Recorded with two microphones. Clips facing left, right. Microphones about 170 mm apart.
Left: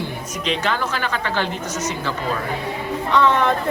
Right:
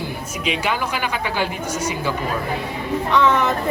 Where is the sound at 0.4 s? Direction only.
10° right (ahead or behind).